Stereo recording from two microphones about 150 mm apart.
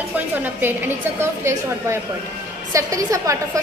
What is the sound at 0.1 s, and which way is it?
A woman's voice, 10° right (ahead or behind).